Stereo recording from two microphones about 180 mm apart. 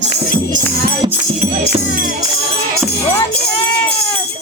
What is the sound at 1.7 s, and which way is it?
Music, 50° right (ahead or behind).